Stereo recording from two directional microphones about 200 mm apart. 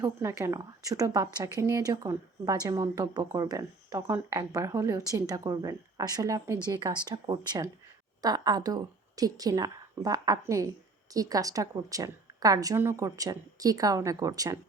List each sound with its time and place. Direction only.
0.0 s a woman's voice: 15° right (ahead or behind)